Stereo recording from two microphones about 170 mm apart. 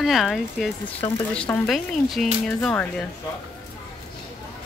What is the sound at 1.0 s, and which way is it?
Speech, 15° left (ahead or behind).